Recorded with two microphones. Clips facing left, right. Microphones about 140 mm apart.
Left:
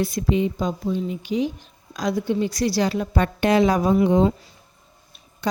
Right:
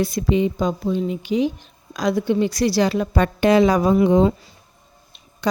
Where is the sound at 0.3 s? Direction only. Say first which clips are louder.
Right 5 dB; 90° right.